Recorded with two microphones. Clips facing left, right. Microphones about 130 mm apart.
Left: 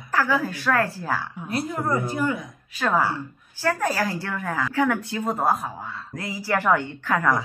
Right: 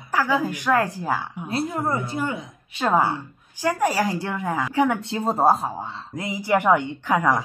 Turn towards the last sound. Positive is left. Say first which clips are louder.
# right 2 dB
turn(degrees=-15)  # may be behind; listen again after turning